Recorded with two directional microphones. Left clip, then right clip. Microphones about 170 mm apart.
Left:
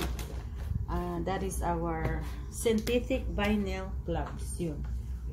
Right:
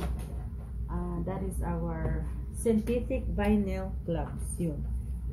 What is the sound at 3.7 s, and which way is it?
Speech, 5° left (ahead or behind).